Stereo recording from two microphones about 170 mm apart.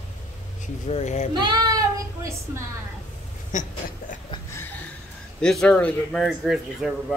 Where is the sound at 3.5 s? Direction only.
50° left (ahead or behind).